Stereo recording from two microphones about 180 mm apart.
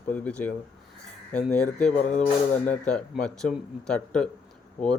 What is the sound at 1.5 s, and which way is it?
Speech, 5° left (ahead or behind).